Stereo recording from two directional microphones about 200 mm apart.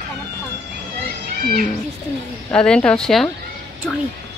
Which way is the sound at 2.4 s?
5° left (ahead or behind).